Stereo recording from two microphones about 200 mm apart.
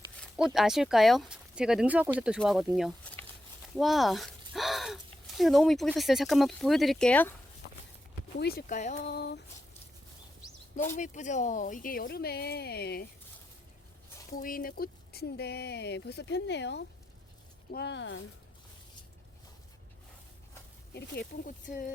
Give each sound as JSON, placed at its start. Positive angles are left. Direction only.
{"t": 0.5, "sound": "speech", "side_deg": 0}
{"t": 8.4, "sound": "speech", "side_deg": 50}
{"t": 9.0, "sound": "speech", "side_deg": 55}
{"t": 10.9, "sound": "speech", "side_deg": 40}
{"t": 14.3, "sound": "speech", "side_deg": 45}
{"t": 20.9, "sound": "speech", "side_deg": 45}